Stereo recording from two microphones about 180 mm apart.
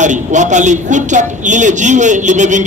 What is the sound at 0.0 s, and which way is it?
A man's voice, 40° right (ahead or behind).